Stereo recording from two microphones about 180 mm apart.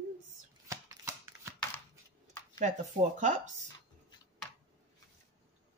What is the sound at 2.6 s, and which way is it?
Speech, 40° right (ahead or behind).